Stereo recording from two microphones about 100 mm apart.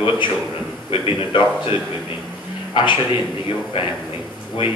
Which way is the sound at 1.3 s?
55° left (ahead or behind).